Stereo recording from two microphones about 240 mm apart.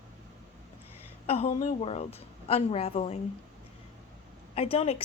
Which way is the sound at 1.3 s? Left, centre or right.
Left.